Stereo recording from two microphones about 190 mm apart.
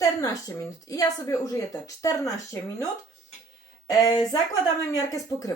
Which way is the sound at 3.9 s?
20° left (ahead or behind).